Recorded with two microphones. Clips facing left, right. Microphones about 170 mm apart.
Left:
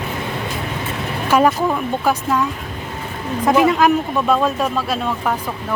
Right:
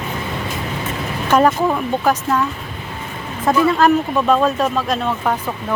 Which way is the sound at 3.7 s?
10° left (ahead or behind).